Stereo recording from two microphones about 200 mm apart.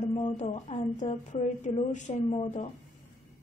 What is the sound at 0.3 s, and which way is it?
Speech, 40° left (ahead or behind).